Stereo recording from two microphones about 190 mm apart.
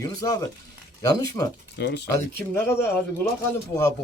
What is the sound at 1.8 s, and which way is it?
Speech, 60° left (ahead or behind).